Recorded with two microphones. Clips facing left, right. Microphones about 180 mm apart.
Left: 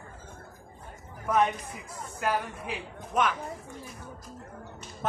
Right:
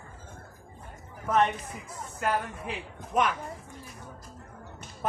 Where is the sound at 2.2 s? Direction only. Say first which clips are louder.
Even; 5° left (ahead or behind).